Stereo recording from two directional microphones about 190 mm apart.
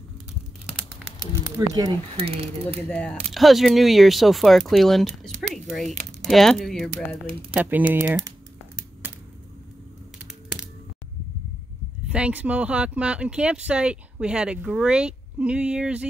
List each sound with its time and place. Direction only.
1.2 s speech: 20° right (ahead or behind)
2.9 s speech: 5° left (ahead or behind)
5.5 s a sound: centre (ahead or behind)
6.2 s speech: centre (ahead or behind)
7.9 s speech: 15° right (ahead or behind)
12.1 s speech: 5° right (ahead or behind)